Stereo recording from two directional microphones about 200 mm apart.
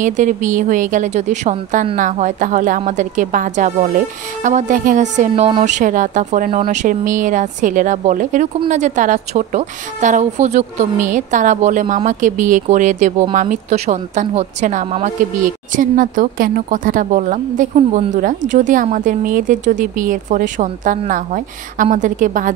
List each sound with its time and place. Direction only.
0.0 s a woman's voice: 40° right (ahead or behind)